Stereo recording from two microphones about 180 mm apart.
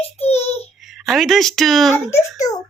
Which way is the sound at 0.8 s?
Centre (ahead or behind).